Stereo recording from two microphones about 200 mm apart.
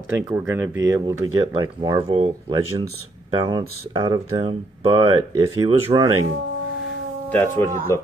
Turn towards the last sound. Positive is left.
turn(degrees=10)  # may be behind; listen again after turning